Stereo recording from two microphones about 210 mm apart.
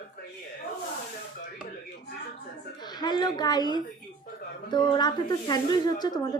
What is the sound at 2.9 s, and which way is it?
A woman's voice, 20° left (ahead or behind).